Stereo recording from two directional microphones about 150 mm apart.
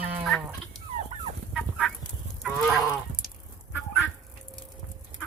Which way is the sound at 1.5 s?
Centre (ahead or behind).